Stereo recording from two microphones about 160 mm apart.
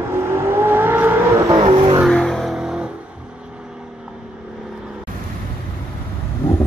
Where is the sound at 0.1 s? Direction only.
15° right (ahead or behind).